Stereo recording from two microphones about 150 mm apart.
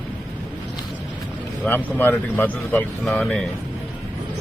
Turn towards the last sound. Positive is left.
turn(degrees=10)  # may be behind; listen again after turning